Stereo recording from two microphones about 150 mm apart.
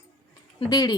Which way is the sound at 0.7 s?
25° left (ahead or behind).